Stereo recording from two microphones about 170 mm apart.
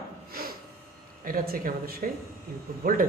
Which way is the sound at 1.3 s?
55° right (ahead or behind).